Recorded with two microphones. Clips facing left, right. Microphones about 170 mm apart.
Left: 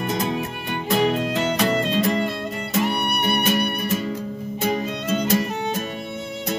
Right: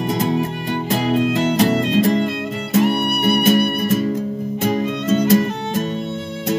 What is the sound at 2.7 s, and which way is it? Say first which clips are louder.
Music: right 6 dB; 50° right (ahead or behind).